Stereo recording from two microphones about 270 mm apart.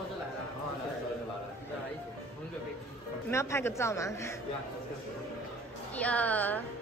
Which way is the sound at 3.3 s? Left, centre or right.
Centre.